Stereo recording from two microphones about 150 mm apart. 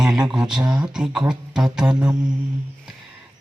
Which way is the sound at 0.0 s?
5° right (ahead or behind).